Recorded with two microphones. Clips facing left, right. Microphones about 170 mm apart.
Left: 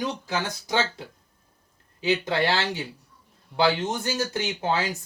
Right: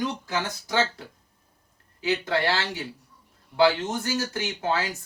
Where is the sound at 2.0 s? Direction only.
20° left (ahead or behind).